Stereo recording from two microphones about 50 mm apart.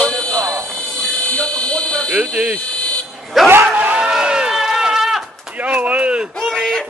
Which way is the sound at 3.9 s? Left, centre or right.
Centre.